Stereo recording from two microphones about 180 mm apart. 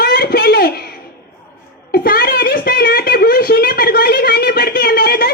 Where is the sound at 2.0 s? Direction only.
55° left (ahead or behind).